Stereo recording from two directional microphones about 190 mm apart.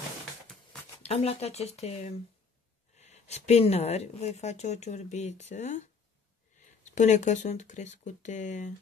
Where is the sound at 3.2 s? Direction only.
35° left (ahead or behind).